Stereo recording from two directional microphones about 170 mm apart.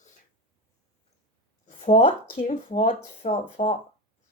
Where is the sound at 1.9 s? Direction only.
40° left (ahead or behind).